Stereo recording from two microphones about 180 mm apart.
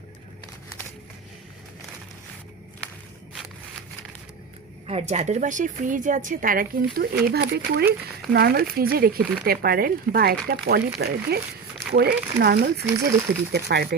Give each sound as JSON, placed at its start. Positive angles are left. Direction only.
{"t": 4.9, "sound": "speech", "side_deg": -35}